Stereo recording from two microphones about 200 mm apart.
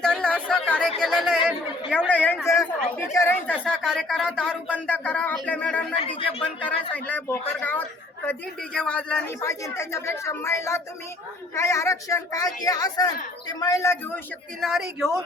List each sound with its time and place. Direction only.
0.0 s a woman's voice: 5° left (ahead or behind)
6.0 s a woman's voice: 25° left (ahead or behind)
6.9 s a woman's voice: 5° left (ahead or behind)
14.6 s speech: centre (ahead or behind)